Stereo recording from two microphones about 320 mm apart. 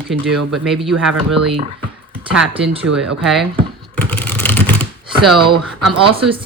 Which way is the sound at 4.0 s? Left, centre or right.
Centre.